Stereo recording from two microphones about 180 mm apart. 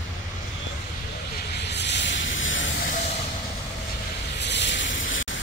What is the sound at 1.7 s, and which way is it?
Vehicle, 75° left (ahead or behind).